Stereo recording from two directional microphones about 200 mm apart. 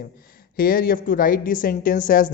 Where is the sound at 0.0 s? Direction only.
50° left (ahead or behind).